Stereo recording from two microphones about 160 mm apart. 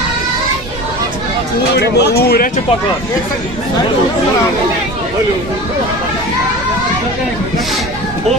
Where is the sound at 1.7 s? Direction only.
90° left.